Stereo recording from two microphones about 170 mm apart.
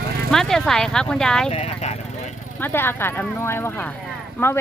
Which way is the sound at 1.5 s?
35° left (ahead or behind).